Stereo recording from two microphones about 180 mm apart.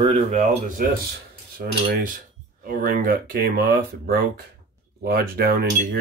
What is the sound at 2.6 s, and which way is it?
Speech, 50° right (ahead or behind).